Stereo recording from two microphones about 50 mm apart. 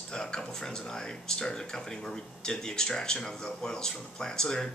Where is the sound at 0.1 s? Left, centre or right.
Centre.